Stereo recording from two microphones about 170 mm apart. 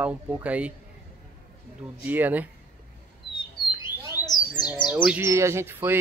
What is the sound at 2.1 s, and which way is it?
Speech, 10° right (ahead or behind).